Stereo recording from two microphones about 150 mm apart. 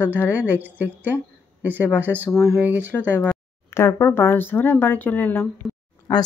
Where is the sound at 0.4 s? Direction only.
10° right (ahead or behind).